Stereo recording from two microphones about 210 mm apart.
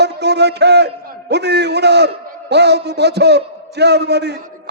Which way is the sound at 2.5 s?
55° right (ahead or behind).